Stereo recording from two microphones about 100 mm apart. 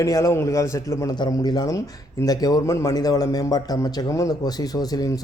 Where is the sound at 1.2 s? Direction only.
45° left (ahead or behind).